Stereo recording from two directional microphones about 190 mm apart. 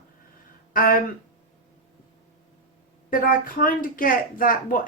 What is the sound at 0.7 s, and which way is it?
Speech, 50° left (ahead or behind).